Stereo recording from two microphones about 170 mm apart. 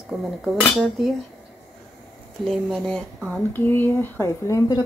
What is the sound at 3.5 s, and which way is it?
Speech, 15° left (ahead or behind).